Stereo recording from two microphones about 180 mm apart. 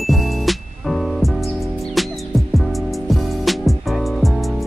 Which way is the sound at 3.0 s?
Centre (ahead or behind).